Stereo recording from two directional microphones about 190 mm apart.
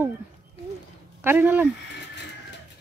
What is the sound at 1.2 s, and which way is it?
Speech, 10° right (ahead or behind).